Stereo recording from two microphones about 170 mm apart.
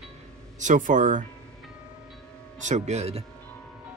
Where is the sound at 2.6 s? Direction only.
45° right (ahead or behind).